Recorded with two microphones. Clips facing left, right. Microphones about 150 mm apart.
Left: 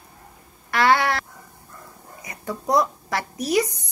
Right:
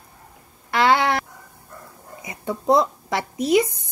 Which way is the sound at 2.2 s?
25° right (ahead or behind).